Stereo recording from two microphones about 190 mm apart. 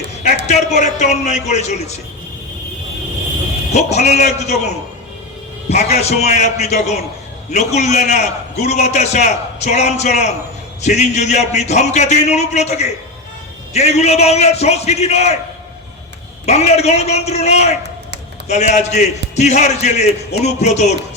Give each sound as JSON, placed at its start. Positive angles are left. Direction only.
{"t": 0.4, "sound": "a man's voice", "side_deg": 40}
{"t": 3.8, "sound": "a man's voice", "side_deg": 35}
{"t": 16.5, "sound": "a man's voice", "side_deg": 35}